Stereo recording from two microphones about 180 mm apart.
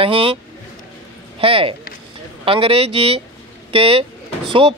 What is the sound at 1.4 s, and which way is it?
Speech, 30° right (ahead or behind).